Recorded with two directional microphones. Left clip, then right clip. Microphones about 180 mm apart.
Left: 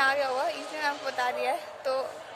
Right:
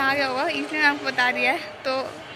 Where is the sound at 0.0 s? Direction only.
10° left (ahead or behind).